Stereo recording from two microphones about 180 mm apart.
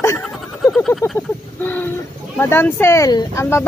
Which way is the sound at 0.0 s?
15° left (ahead or behind).